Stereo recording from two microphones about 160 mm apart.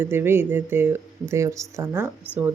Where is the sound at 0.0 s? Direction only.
15° right (ahead or behind).